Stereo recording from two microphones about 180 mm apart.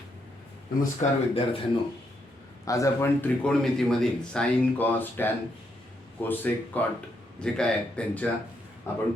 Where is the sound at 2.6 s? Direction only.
15° left (ahead or behind).